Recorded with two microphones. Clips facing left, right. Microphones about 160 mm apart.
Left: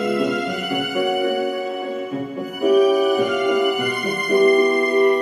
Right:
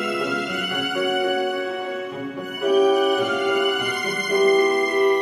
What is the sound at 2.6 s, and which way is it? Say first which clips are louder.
Music: left 2 dB; centre (ahead or behind).